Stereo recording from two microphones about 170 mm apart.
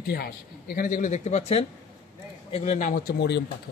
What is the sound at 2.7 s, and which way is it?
Speech, 50° left (ahead or behind).